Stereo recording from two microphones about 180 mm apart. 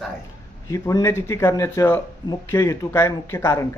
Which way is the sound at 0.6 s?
15° left (ahead or behind).